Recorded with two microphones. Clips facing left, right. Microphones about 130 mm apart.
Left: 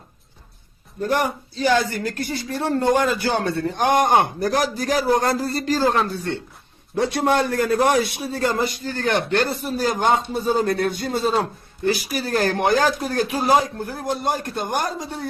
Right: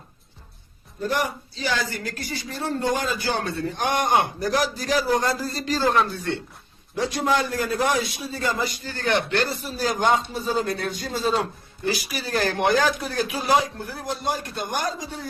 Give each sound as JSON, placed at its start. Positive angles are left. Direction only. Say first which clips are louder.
{"t": 1.1, "sound": "a man's voice", "louder": "left 5 dB", "side_deg": 50}
{"t": 6.9, "sound": "a man's voice", "louder": "left 4 dB", "side_deg": 60}